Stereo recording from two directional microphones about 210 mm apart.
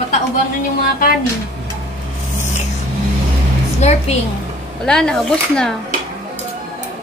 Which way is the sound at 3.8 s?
30° left (ahead or behind).